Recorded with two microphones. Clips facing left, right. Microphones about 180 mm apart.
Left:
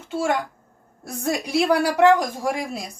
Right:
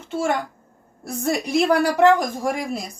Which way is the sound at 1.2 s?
5° left (ahead or behind).